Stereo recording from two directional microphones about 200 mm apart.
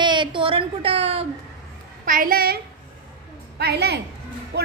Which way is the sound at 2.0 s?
45° right (ahead or behind).